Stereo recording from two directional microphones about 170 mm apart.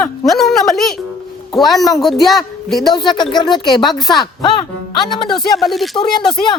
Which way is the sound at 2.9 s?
25° left (ahead or behind).